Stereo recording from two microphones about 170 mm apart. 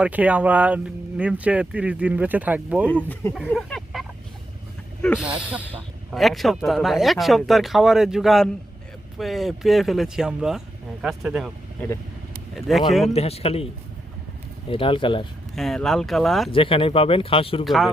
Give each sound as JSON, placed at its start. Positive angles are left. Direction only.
{"t": 0.0, "sound": "speech", "side_deg": -10}
{"t": 2.8, "sound": "speech", "side_deg": 10}
{"t": 3.4, "sound": "a sound", "side_deg": 5}
{"t": 5.2, "sound": "speech", "side_deg": -10}
{"t": 12.5, "sound": "speech", "side_deg": 0}
{"t": 13.1, "sound": "speech", "side_deg": 35}
{"t": 14.7, "sound": "speech", "side_deg": 30}
{"t": 15.5, "sound": "speech", "side_deg": 0}
{"t": 16.5, "sound": "speech", "side_deg": 30}
{"t": 17.7, "sound": "speech", "side_deg": 0}